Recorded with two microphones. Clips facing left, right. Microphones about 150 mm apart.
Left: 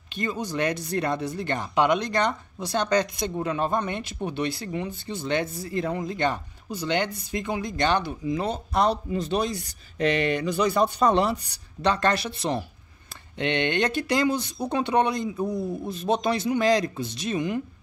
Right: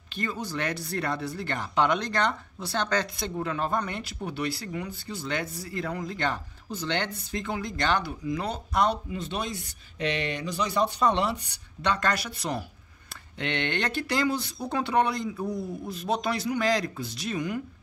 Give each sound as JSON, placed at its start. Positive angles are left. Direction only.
{"t": 0.1, "sound": "speech", "side_deg": 20}